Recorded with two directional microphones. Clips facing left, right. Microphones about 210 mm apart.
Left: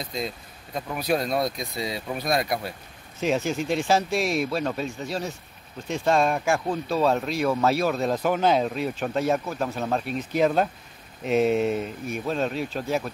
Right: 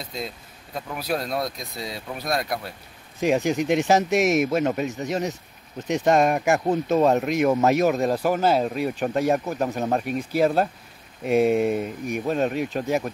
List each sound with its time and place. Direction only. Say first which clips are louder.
0.0 s speech: left 2 dB; 5° right (ahead or behind)
3.2 s speech: right 3 dB; 15° right (ahead or behind)